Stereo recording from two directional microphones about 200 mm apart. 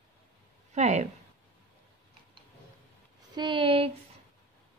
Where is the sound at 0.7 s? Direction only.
35° right (ahead or behind).